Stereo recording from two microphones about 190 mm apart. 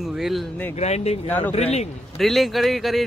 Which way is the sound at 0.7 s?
35° left (ahead or behind).